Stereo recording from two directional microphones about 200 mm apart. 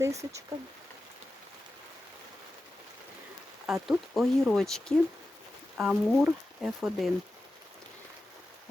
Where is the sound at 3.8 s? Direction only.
Centre (ahead or behind).